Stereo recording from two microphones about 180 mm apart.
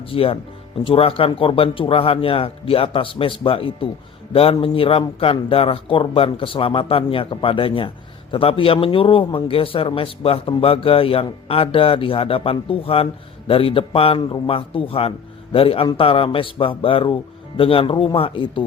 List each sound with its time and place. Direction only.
0.1 s a man's voice: 30° left (ahead or behind)